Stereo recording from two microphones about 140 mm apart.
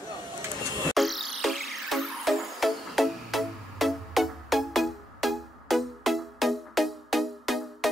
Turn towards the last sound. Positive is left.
turn(degrees=0)  # may be behind; listen again after turning